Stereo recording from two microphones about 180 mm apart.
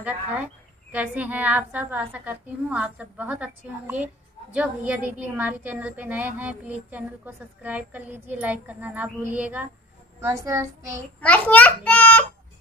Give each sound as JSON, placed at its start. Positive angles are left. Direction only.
{"t": 0.9, "sound": "a woman's voice", "side_deg": -10}
{"t": 11.1, "sound": "a child's voice", "side_deg": 10}